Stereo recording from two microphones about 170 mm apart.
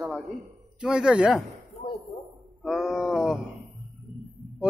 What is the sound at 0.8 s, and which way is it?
Speech, 5° right (ahead or behind).